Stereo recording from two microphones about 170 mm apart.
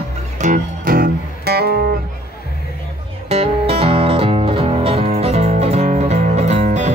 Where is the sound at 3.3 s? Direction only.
35° right (ahead or behind).